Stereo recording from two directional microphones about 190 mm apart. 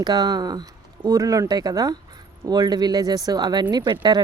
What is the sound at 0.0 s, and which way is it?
Speech, 20° right (ahead or behind).